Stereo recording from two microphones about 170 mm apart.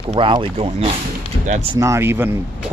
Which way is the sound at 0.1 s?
30° right (ahead or behind).